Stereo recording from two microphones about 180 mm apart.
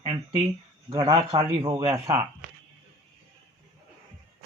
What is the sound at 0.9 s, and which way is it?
Speech, 30° right (ahead or behind).